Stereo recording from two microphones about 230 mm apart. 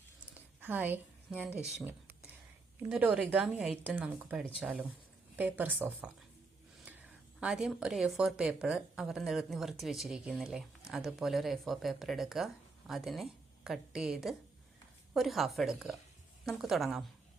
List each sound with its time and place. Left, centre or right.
0.6 s a woman's voice: centre